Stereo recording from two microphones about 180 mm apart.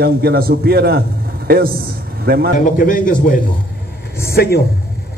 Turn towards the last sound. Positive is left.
turn(degrees=60)  # may be behind; listen again after turning